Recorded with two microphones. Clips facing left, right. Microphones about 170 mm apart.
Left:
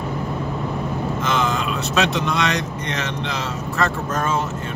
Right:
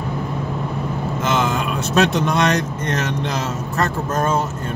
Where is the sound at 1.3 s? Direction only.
50° right (ahead or behind).